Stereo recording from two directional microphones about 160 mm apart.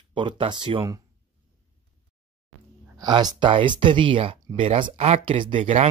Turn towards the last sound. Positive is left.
turn(degrees=-40)  # may be behind; listen again after turning